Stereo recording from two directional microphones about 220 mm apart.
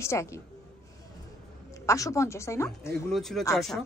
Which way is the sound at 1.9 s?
15° left (ahead or behind).